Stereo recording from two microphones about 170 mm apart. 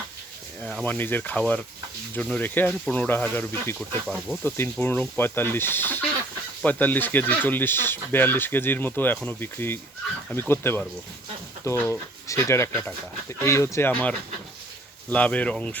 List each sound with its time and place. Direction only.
0.6 s speech: 5° left (ahead or behind)
3.8 s speech: centre (ahead or behind)
4.4 s speech: 15° left (ahead or behind)